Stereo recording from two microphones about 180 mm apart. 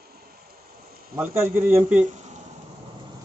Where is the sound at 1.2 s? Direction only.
15° right (ahead or behind).